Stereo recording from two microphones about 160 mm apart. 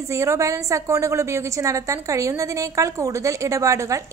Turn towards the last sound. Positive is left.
turn(degrees=-20)  # may be behind; listen again after turning